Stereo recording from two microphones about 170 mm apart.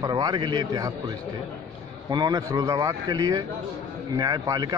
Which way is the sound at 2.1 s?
25° right (ahead or behind).